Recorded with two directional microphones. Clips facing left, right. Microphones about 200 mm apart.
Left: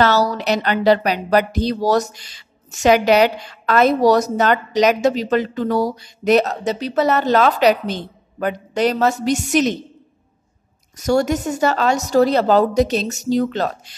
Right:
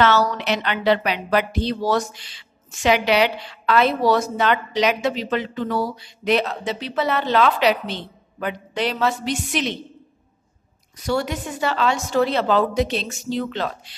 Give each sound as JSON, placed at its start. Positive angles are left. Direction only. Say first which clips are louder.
{"t": 0.0, "sound": "speech", "louder": "left 2 dB", "side_deg": 35}
{"t": 11.0, "sound": "speech", "louder": "left 6 dB", "side_deg": 45}